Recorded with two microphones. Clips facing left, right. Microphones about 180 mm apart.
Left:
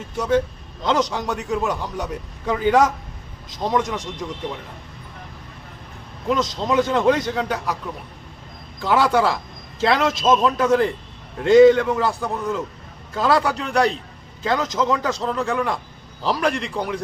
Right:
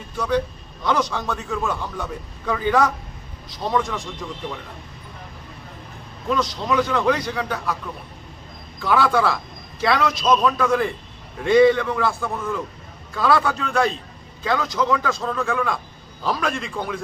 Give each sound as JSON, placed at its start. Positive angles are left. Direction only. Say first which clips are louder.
{"t": 0.8, "sound": "a man's voice", "louder": "left 2 dB", "side_deg": 20}
{"t": 6.2, "sound": "a man's voice", "louder": "left 1 dB", "side_deg": 20}
{"t": 8.8, "sound": "a man's voice", "louder": "left 1 dB", "side_deg": 20}